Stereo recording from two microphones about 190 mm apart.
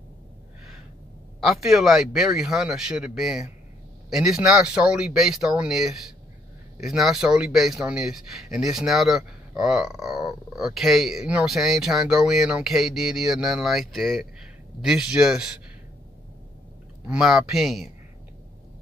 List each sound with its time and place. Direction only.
1.4 s speech: centre (ahead or behind)
17.1 s speech: centre (ahead or behind)